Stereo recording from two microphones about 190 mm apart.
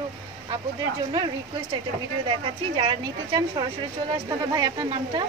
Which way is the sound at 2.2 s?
25° right (ahead or behind).